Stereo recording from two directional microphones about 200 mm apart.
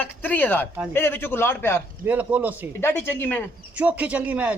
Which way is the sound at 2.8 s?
10° left (ahead or behind).